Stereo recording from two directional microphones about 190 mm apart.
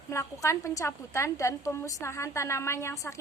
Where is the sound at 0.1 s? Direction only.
15° left (ahead or behind).